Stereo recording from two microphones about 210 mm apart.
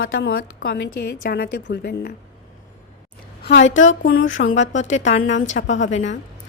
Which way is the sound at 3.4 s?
60° left (ahead or behind).